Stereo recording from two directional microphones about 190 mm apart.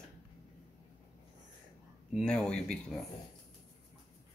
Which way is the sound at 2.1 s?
5° left (ahead or behind).